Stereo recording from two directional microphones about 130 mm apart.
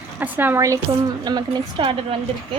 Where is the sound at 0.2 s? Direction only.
15° right (ahead or behind).